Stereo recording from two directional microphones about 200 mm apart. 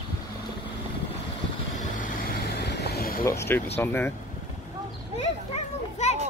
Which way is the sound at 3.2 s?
10° left (ahead or behind).